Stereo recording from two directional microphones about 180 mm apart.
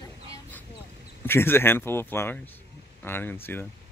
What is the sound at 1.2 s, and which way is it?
Speech, 10° left (ahead or behind).